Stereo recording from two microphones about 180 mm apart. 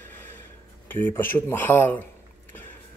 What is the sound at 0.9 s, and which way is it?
Speech, 10° left (ahead or behind).